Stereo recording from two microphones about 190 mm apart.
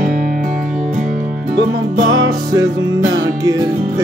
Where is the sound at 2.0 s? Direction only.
90° right.